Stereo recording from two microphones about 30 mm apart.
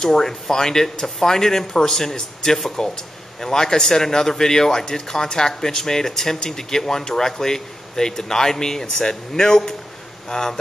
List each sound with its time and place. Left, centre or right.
0.0 s speech: centre